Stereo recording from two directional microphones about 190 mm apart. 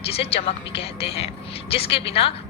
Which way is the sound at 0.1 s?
30° left (ahead or behind).